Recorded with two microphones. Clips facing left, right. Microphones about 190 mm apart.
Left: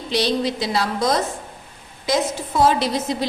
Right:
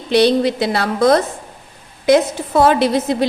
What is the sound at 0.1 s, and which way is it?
A woman's voice, 60° right (ahead or behind).